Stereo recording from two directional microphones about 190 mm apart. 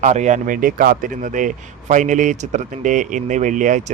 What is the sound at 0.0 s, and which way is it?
Speech, 40° right (ahead or behind).